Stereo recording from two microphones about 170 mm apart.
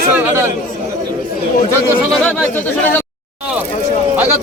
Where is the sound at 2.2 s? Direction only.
10° left (ahead or behind).